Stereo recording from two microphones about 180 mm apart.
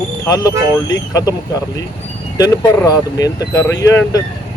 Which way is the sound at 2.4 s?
20° left (ahead or behind).